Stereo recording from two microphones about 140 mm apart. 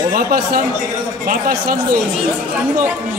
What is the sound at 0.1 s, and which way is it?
Speech, 90° right.